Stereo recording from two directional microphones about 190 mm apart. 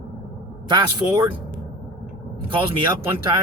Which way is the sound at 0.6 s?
20° right (ahead or behind).